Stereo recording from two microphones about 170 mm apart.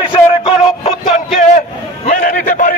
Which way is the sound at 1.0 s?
50° left (ahead or behind).